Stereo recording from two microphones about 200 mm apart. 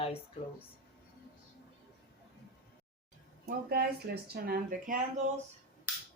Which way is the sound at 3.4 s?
50° right (ahead or behind).